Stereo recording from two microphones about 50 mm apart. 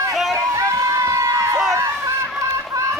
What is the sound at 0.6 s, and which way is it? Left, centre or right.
Run, right.